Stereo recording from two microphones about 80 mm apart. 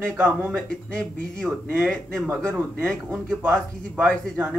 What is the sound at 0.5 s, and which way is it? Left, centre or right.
Speech, centre.